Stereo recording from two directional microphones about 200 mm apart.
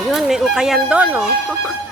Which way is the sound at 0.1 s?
Centre (ahead or behind).